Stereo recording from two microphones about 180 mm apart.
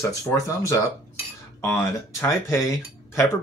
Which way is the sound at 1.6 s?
10° left (ahead or behind).